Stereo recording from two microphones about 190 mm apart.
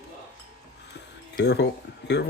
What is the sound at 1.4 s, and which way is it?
Speech, 65° left (ahead or behind).